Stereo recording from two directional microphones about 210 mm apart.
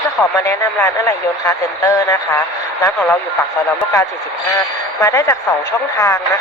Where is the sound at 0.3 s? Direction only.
15° left (ahead or behind).